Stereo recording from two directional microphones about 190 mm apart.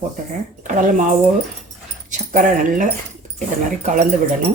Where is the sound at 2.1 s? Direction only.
45° right (ahead or behind).